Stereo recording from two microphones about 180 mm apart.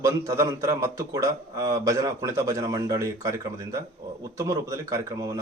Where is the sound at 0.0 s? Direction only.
15° right (ahead or behind).